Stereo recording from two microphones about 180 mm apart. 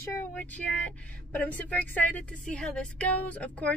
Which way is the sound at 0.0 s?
10° left (ahead or behind).